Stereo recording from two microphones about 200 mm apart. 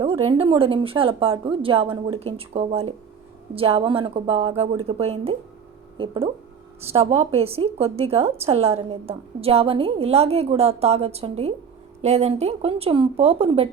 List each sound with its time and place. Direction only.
0.0 s a woman's voice: 25° right (ahead or behind)